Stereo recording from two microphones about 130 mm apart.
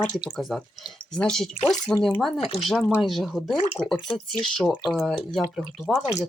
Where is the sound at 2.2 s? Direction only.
Centre (ahead or behind).